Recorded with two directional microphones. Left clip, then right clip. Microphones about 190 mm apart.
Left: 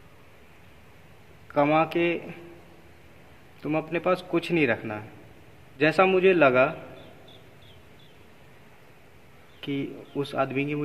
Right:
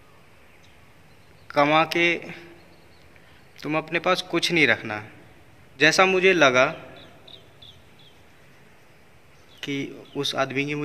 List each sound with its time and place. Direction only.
1.5 s a man's voice: 5° right (ahead or behind)
3.6 s a man's voice: 5° right (ahead or behind)
9.6 s speech: 5° right (ahead or behind)